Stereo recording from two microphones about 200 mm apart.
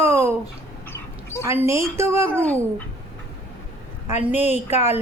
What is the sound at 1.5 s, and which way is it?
Speech, 15° right (ahead or behind).